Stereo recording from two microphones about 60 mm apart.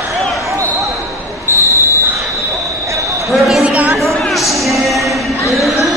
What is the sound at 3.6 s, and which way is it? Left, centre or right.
Chatter, right.